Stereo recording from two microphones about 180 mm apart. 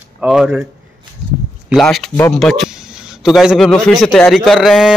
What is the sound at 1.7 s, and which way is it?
A man's voice, centre (ahead or behind).